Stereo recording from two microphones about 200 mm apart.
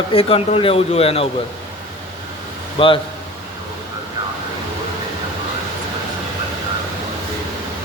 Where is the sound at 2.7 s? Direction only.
25° left (ahead or behind).